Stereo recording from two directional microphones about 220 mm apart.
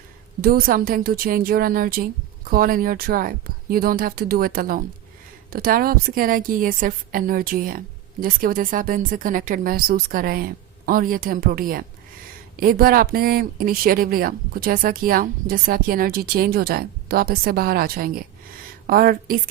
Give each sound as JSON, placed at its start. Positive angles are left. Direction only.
{"t": 0.4, "sound": "speech", "side_deg": -40}